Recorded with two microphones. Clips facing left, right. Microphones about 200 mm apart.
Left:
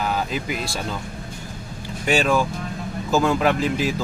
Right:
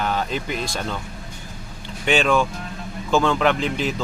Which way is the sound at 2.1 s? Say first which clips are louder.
Right 1 dB; 5° left (ahead or behind).